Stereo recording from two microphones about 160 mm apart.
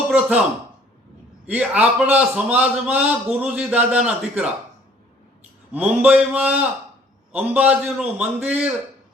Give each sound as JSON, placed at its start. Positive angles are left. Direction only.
{"t": 0.1, "sound": "speech", "side_deg": -10}
{"t": 1.5, "sound": "a man's voice", "side_deg": -10}
{"t": 5.7, "sound": "a man's voice", "side_deg": -10}